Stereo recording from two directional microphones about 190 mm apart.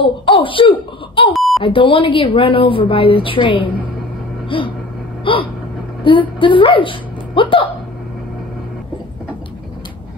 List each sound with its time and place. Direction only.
0.0 s a woman's voice: 25° left (ahead or behind)
1.3 s beep: centre (ahead or behind)
1.6 s a woman's voice: 25° left (ahead or behind)
5.2 s gasp: 25° left (ahead or behind)
6.0 s speech: 25° left (ahead or behind)